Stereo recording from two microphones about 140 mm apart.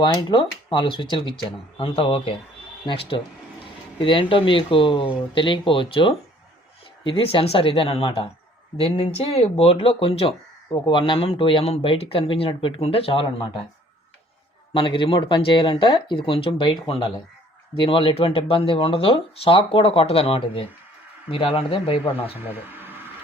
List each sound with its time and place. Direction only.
0.0 s speech: 35° left (ahead or behind)
14.7 s speech: 35° left (ahead or behind)
22.4 s a sound: 15° right (ahead or behind)